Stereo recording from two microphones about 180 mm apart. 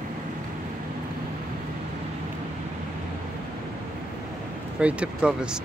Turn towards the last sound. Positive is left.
turn(degrees=-5)  # may be behind; listen again after turning